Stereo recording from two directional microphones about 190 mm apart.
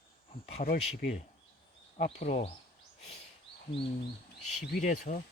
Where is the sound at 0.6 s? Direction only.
50° left (ahead or behind).